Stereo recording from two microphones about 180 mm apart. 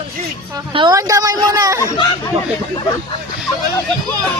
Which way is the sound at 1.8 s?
15° left (ahead or behind).